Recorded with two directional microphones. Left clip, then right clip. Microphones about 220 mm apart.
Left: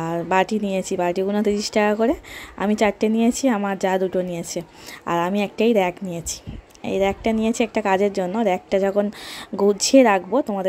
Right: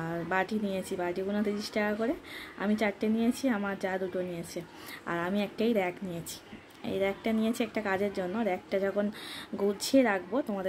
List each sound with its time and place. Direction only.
0.0 s a woman's voice: 35° left (ahead or behind)